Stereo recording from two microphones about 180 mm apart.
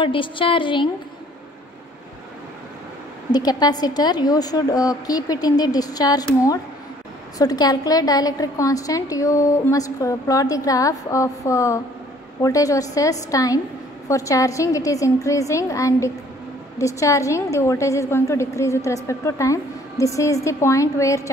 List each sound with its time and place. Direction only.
0.0 s a woman's voice: 30° left (ahead or behind)
3.3 s a woman's voice: 20° left (ahead or behind)
7.3 s a woman's voice: 20° left (ahead or behind)